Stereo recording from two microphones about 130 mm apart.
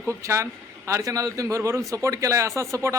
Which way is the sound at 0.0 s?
20° right (ahead or behind).